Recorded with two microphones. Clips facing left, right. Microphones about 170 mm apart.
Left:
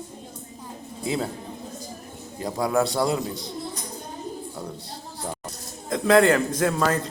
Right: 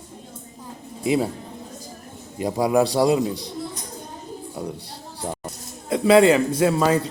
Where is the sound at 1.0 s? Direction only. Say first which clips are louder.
Right 6 dB; 15° right (ahead or behind).